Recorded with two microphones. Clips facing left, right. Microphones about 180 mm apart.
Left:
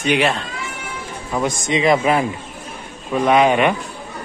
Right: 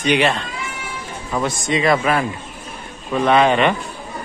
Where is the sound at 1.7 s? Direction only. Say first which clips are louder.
Left 1 dB; 20° left (ahead or behind).